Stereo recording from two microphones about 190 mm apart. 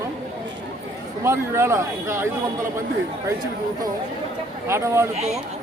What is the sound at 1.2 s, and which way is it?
Speech, 15° right (ahead or behind).